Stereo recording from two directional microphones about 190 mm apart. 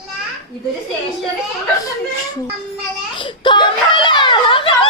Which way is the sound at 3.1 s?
25° left (ahead or behind).